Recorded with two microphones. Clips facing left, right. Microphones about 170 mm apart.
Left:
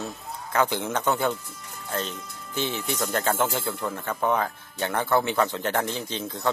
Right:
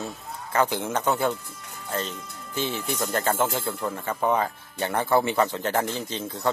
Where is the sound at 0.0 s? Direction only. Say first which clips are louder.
Even; 5° right (ahead or behind).